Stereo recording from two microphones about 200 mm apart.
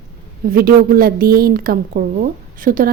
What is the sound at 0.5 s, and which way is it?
A woman's voice, 45° right (ahead or behind).